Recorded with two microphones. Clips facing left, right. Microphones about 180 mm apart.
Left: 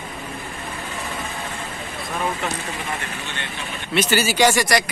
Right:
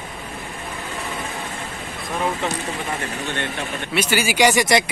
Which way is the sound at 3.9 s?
10° right (ahead or behind).